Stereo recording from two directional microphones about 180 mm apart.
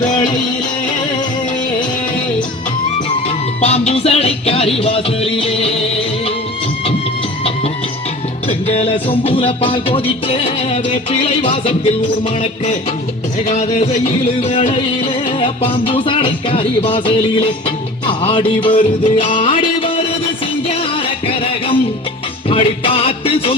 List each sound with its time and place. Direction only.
0.1 s music: 25° left (ahead or behind)
3.2 s music: 35° left (ahead or behind)
8.4 s music: 30° left (ahead or behind)
13.5 s music: 40° left (ahead or behind)
22.4 s music: 30° left (ahead or behind)